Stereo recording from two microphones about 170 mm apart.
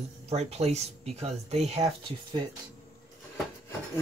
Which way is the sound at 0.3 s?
40° right (ahead or behind).